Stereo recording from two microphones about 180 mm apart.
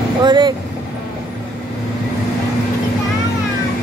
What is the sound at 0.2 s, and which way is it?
Speech, 25° right (ahead or behind).